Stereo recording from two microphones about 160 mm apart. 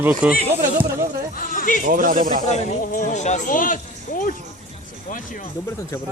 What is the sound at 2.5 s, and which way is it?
Speech, 50° left (ahead or behind).